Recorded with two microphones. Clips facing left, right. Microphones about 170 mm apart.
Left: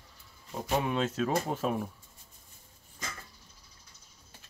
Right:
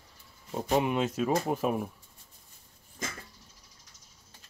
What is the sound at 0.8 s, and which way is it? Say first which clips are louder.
Speech: right 2 dB; 15° right (ahead or behind).